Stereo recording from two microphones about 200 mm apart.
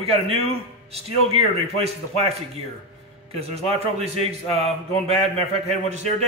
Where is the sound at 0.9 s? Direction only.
30° right (ahead or behind).